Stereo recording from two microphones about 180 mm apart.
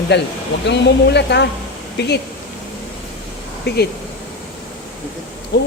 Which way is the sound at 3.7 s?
65° left (ahead or behind).